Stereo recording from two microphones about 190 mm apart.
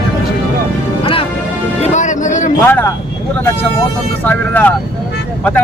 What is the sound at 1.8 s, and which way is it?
Music, 40° left (ahead or behind).